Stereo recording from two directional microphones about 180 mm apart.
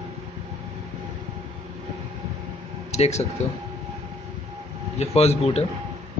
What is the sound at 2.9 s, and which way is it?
Speech, 35° left (ahead or behind).